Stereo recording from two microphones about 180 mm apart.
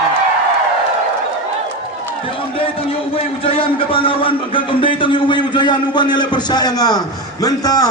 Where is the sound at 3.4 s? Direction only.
30° left (ahead or behind).